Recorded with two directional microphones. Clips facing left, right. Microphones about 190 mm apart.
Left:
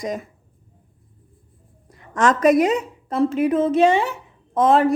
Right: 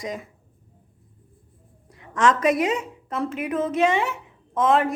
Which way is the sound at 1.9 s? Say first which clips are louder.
Left 2 dB; 45° left (ahead or behind).